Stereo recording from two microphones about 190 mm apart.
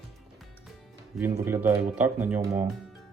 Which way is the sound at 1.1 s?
Centre (ahead or behind).